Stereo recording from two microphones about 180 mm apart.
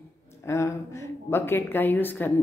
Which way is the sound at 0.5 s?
15° left (ahead or behind).